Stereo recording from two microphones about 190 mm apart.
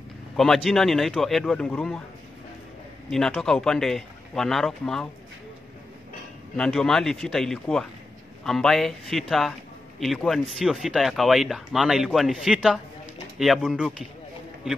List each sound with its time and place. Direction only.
0.4 s a man's voice: centre (ahead or behind)
3.1 s a man's voice: centre (ahead or behind)
6.5 s a man's voice: 5° left (ahead or behind)